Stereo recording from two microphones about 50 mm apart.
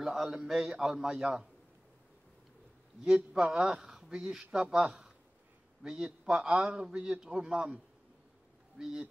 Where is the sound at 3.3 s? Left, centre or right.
Centre.